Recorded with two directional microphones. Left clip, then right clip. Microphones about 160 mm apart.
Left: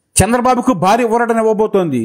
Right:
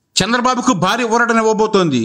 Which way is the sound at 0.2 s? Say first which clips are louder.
Left 2 dB; 5° left (ahead or behind).